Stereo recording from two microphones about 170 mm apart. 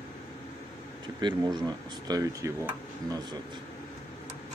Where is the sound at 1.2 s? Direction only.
25° right (ahead or behind).